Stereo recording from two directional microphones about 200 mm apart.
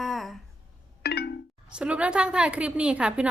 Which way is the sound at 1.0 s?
55° left (ahead or behind).